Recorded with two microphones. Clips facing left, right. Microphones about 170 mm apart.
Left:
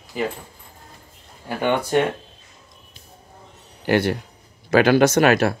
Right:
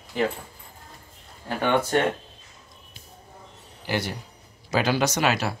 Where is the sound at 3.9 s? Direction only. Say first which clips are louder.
Left 9 dB; 60° left (ahead or behind).